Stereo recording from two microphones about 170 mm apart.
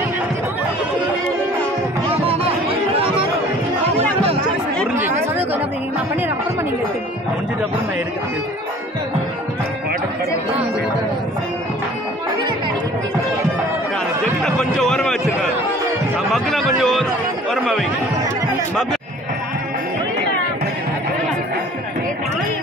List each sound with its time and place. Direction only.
2.0 s chatter: 35° right (ahead or behind)
14.4 s a sound: 5° left (ahead or behind)
16.3 s music: centre (ahead or behind)